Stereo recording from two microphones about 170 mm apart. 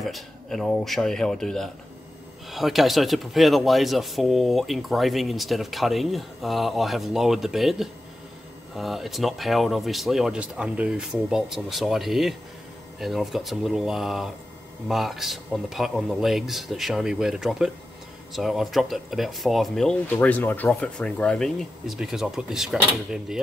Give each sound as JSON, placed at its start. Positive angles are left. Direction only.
{"t": 0.0, "sound": "speech", "side_deg": 0}